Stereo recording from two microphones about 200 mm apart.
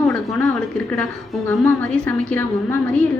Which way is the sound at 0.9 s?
5° left (ahead or behind).